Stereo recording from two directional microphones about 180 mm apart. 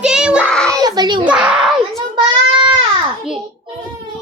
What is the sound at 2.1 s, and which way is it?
Child singing, 25° right (ahead or behind).